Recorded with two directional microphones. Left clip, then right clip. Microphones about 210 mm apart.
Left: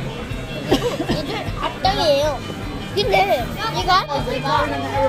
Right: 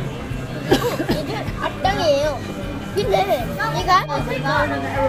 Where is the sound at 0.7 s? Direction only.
40° right (ahead or behind).